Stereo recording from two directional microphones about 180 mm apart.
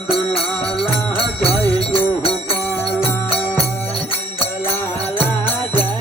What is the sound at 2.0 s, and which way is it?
Music, 30° left (ahead or behind).